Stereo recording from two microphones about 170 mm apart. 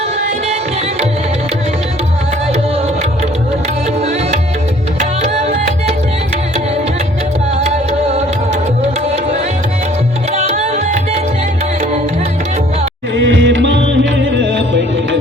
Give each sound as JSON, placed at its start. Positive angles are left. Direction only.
{"t": 5.2, "sound": "music", "side_deg": -40}
{"t": 7.6, "sound": "music", "side_deg": -35}
{"t": 10.3, "sound": "music", "side_deg": -40}
{"t": 13.2, "sound": "music", "side_deg": -90}